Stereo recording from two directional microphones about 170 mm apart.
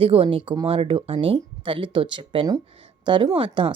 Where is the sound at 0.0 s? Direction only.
35° right (ahead or behind).